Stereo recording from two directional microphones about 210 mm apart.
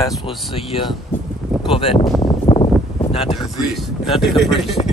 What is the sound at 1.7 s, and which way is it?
Speech, 25° left (ahead or behind).